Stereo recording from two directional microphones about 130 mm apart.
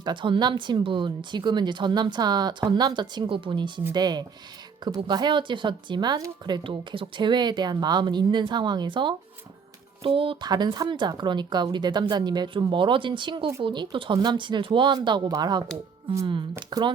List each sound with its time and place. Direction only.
0.0 s speech: 40° right (ahead or behind)